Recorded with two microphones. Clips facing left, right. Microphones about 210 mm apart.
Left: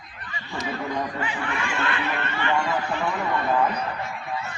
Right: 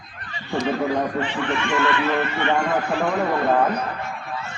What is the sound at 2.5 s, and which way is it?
Speech, 50° right (ahead or behind).